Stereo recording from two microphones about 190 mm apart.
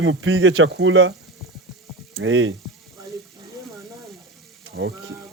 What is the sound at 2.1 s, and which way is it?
Speech, 90° right.